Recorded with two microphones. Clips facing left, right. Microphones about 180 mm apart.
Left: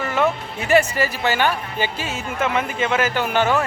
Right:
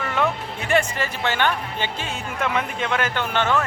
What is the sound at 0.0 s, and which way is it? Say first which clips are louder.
Speech: left 3 dB; 5° left (ahead or behind).